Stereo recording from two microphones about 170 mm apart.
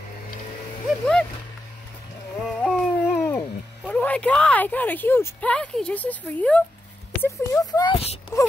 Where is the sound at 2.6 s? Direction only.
10° left (ahead or behind).